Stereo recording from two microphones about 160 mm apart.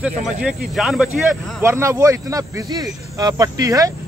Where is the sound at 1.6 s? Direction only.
15° right (ahead or behind).